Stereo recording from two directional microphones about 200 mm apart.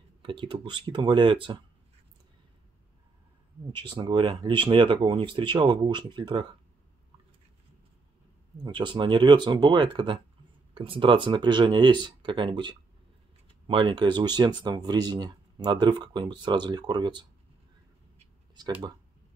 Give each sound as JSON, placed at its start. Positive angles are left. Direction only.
{"t": 0.2, "sound": "speech", "side_deg": -25}
{"t": 3.7, "sound": "speech", "side_deg": -25}
{"t": 8.6, "sound": "speech", "side_deg": -25}